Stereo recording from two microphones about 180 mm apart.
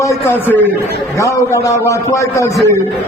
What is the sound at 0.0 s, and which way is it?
A man's voice, 15° left (ahead or behind).